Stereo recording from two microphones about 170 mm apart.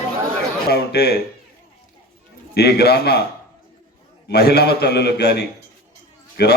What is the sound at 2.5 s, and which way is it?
Speech, 70° left (ahead or behind).